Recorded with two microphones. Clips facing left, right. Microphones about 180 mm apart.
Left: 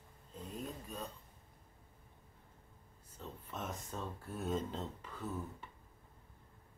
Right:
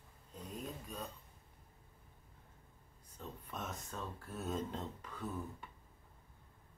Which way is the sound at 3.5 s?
10° left (ahead or behind).